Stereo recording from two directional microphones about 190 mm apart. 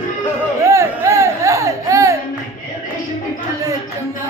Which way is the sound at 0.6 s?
15° right (ahead or behind).